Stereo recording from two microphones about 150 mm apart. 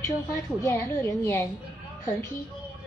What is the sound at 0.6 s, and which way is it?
A woman's voice, 20° left (ahead or behind).